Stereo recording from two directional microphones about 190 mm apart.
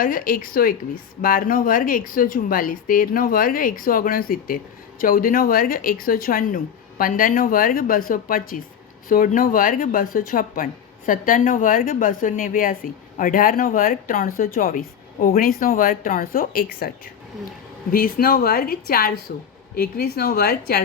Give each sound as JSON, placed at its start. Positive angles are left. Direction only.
{"t": 0.0, "sound": "speech", "side_deg": 45}
{"t": 17.9, "sound": "a woman's voice", "side_deg": 50}